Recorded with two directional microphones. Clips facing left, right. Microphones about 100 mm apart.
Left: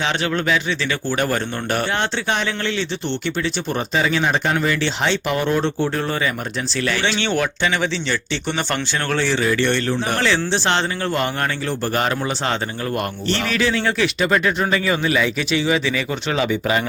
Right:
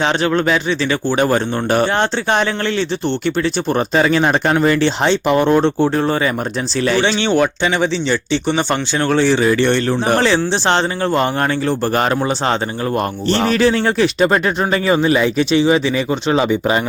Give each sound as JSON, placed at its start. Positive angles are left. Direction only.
{"t": 0.0, "sound": "speech", "side_deg": -35}
{"t": 1.1, "sound": "speech", "side_deg": -25}
{"t": 3.7, "sound": "speech", "side_deg": -50}